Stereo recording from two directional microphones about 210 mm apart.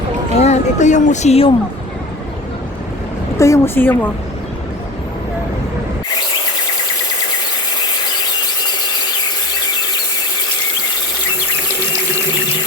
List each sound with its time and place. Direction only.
0.3 s speech: 30° left (ahead or behind)
3.3 s a woman's voice: 15° left (ahead or behind)